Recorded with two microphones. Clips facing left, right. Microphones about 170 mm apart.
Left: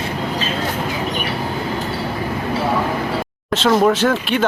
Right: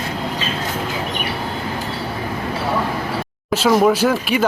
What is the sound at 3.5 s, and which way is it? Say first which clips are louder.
Speech: even; 5° right (ahead or behind).